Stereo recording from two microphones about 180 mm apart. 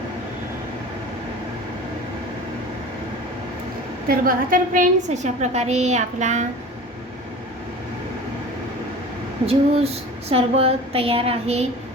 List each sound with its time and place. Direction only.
4.1 s a woman's voice: 50° right (ahead or behind)
9.5 s a woman's voice: 35° right (ahead or behind)